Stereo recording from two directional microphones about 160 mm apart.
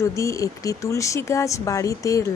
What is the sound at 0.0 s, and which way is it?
Speech, 20° left (ahead or behind).